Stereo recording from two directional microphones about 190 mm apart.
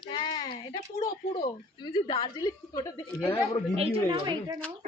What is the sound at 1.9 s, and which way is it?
A woman's voice, 25° left (ahead or behind).